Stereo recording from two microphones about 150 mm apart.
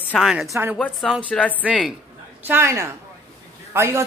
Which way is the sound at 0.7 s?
5° left (ahead or behind).